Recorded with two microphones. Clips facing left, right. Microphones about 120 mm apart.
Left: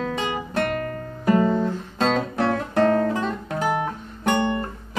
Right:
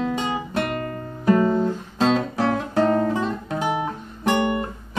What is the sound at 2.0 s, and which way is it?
Guitar, 5° right (ahead or behind).